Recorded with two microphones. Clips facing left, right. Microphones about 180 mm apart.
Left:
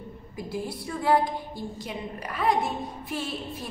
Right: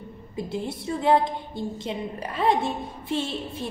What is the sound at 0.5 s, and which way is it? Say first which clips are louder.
A woman's voice: right 2 dB; 25° right (ahead or behind).